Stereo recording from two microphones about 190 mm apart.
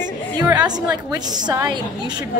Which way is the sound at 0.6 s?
20° right (ahead or behind).